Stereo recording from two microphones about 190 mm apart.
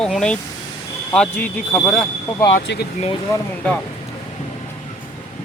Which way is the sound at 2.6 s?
65° left (ahead or behind).